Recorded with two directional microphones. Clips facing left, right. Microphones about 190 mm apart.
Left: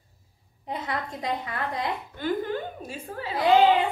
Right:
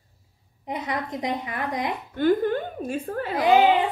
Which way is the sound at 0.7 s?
20° right (ahead or behind).